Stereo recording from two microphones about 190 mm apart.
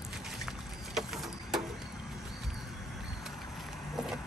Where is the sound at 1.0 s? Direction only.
Centre (ahead or behind).